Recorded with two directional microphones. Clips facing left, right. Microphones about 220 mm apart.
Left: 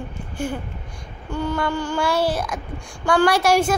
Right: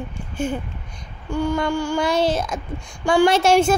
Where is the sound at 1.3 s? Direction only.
10° right (ahead or behind).